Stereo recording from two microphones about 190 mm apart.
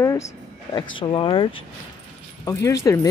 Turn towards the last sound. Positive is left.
turn(degrees=20)  # may be behind; listen again after turning